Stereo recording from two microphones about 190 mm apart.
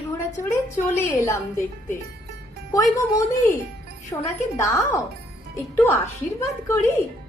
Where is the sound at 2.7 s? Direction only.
15° left (ahead or behind).